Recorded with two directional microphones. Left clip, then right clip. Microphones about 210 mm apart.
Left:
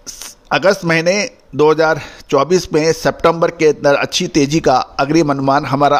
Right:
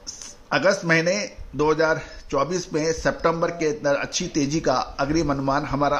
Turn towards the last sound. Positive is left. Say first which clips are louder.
# left 10 dB
turn(degrees=50)  # may be behind; listen again after turning